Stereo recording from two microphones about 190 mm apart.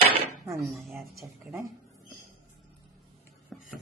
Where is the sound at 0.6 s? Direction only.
Centre (ahead or behind).